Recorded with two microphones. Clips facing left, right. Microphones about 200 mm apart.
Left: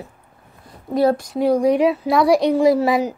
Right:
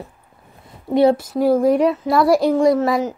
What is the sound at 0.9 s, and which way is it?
Speech, 25° right (ahead or behind).